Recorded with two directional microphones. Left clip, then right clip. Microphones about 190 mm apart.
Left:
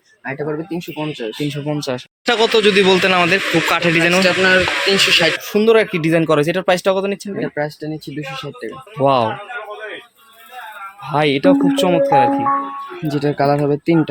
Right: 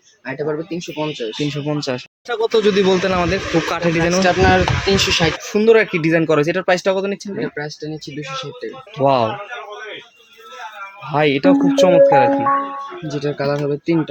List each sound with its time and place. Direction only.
0.3 s speech: 45° left (ahead or behind)
1.5 s speech: centre (ahead or behind)
4.2 s speech: 40° right (ahead or behind)
5.5 s speech: 5° left (ahead or behind)
7.3 s speech: 40° left (ahead or behind)
9.0 s speech: 5° left (ahead or behind)
11.1 s speech: 5° left (ahead or behind)
13.1 s speech: 55° left (ahead or behind)